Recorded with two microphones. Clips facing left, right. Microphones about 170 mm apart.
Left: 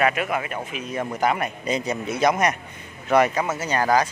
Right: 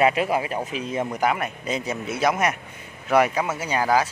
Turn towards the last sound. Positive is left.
turn(degrees=-5)  # may be behind; listen again after turning